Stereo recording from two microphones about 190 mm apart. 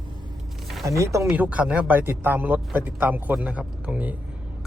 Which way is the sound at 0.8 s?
15° right (ahead or behind).